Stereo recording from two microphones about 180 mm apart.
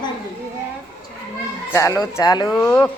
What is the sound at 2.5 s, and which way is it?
Speech, 10° left (ahead or behind).